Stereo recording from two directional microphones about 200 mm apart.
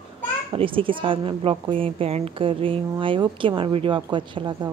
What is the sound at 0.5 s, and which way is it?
A woman's voice, 25° right (ahead or behind).